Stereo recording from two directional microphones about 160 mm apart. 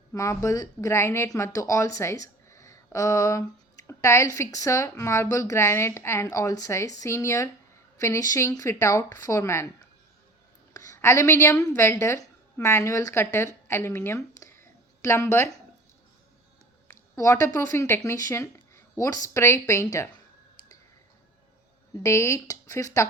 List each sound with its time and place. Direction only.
0.1 s speech: 20° left (ahead or behind)
10.8 s a woman's voice: 20° left (ahead or behind)
13.7 s a sound: 15° left (ahead or behind)
16.9 s speech: 20° left (ahead or behind)
22.0 s speech: 15° left (ahead or behind)